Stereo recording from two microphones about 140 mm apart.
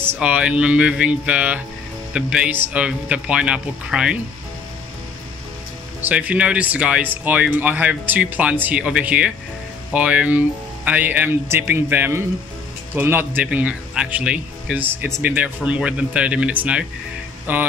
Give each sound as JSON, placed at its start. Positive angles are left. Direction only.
{"t": 0.0, "sound": "speech", "side_deg": -10}
{"t": 5.9, "sound": "speech", "side_deg": -10}